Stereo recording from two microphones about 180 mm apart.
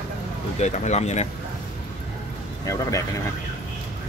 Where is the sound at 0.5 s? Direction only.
40° left (ahead or behind).